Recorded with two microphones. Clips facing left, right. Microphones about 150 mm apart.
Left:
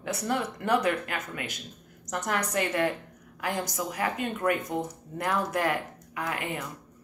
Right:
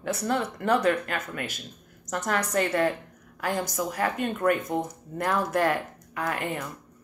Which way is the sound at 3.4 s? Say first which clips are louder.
Right 3 dB; 15° left (ahead or behind).